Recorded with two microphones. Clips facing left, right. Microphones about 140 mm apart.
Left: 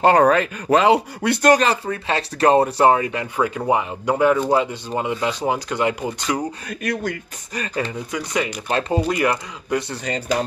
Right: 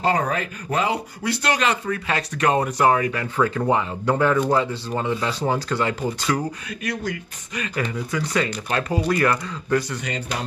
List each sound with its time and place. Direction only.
0.0 s speech: 75° left (ahead or behind); by 1.5 s 60° left (ahead or behind)
1.5 s speech: 35° left (ahead or behind); by 6.4 s 20° left (ahead or behind)
6.7 s speech: 50° left (ahead or behind)
7.5 s speech: 35° left (ahead or behind)
7.8 s speech: 20° left (ahead or behind)
8.6 s speech: 25° left (ahead or behind)